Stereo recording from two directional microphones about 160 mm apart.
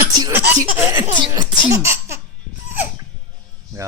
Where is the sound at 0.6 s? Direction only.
15° right (ahead or behind).